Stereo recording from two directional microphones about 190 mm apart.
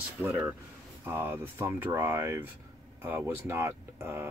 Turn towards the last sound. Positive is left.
turn(degrees=-15)  # may be behind; listen again after turning